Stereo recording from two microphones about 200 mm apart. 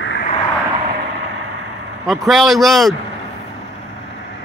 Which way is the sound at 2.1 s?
Centre (ahead or behind).